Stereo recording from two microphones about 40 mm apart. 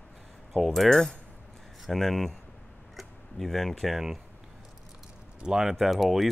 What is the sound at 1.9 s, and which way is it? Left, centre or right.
Speech, centre.